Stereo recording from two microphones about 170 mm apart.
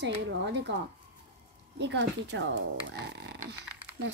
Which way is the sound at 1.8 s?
90° right.